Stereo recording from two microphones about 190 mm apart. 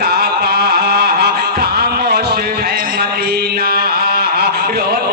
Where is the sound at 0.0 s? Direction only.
55° right (ahead or behind).